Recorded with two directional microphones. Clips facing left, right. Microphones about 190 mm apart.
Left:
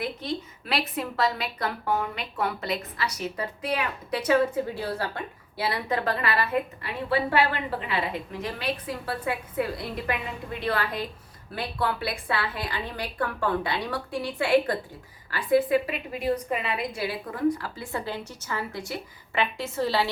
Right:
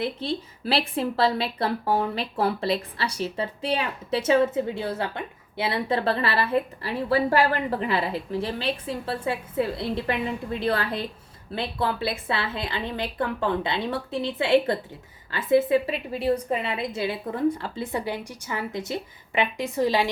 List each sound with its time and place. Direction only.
0.0 s a woman's voice: 30° right (ahead or behind)